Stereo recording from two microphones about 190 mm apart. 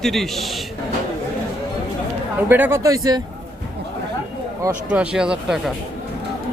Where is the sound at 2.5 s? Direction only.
10° right (ahead or behind).